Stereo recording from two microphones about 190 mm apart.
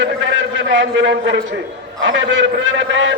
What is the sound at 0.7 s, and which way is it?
A man's voice, 75° right (ahead or behind).